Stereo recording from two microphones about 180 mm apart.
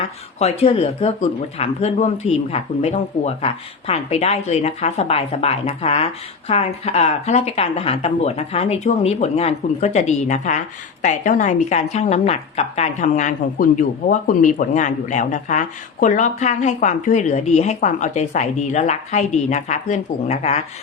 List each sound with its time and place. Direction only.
0.0 s a woman's voice: 35° left (ahead or behind)